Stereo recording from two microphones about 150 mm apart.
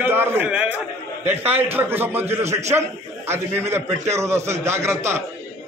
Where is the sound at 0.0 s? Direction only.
15° right (ahead or behind).